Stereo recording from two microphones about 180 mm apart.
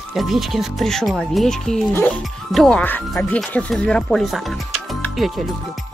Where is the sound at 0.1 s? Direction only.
Centre (ahead or behind).